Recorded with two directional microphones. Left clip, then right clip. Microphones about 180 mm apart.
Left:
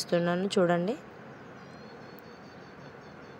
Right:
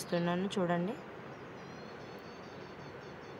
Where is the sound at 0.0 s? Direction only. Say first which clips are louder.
Left 6 dB; 25° left (ahead or behind).